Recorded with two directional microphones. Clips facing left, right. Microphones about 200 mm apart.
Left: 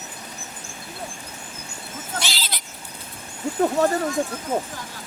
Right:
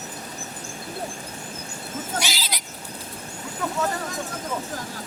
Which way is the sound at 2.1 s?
10° right (ahead or behind).